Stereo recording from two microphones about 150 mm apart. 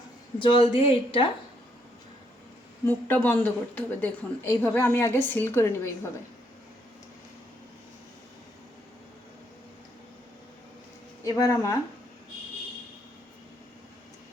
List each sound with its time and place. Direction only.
0.3 s a woman's voice: 35° left (ahead or behind)
2.8 s speech: 10° left (ahead or behind)
11.2 s speech: 25° left (ahead or behind)